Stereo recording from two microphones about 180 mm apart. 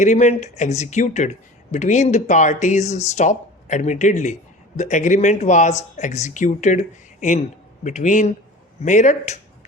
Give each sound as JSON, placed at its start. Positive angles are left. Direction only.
{"t": 0.0, "sound": "speech", "side_deg": 40}